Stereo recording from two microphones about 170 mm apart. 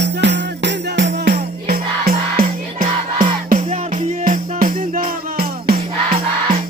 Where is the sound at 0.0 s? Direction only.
90° right; by 2.1 s 65° right (ahead or behind).